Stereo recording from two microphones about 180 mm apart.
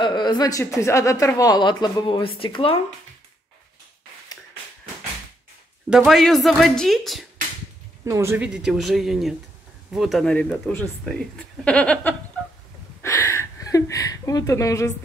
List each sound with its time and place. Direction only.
0.0 s a sound: 25° left (ahead or behind)
0.7 s speech: 15° left (ahead or behind)
5.9 s speech: centre (ahead or behind)
8.0 s speech: 15° right (ahead or behind)
8.5 s speech: 5° right (ahead or behind)
13.0 s a sound: 15° left (ahead or behind)